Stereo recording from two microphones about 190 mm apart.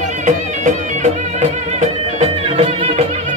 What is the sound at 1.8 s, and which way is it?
Music, 35° right (ahead or behind).